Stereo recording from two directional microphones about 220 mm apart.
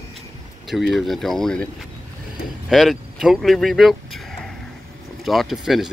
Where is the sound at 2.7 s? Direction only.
Centre (ahead or behind).